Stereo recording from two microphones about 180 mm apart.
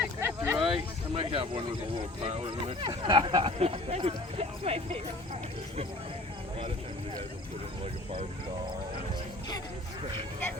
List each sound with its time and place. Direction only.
0.0 s a sound: 10° right (ahead or behind)
0.7 s speech: 30° right (ahead or behind)
10.0 s speech: 25° right (ahead or behind)